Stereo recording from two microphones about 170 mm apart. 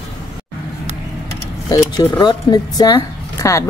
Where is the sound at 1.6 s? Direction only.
25° left (ahead or behind).